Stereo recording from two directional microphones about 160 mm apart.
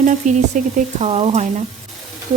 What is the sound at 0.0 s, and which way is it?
Speech, 50° right (ahead or behind).